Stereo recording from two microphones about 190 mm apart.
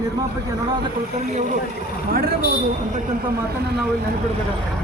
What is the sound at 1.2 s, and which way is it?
Speech, 45° right (ahead or behind).